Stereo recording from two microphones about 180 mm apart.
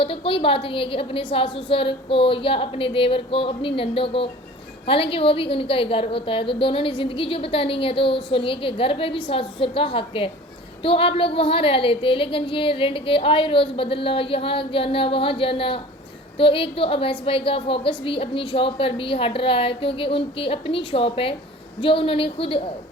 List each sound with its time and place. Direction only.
0.0 s a woman's voice: 30° left (ahead or behind)